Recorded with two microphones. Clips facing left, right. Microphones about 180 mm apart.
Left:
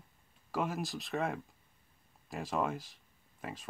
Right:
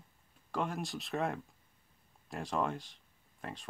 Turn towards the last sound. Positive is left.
turn(degrees=5)  # may be behind; listen again after turning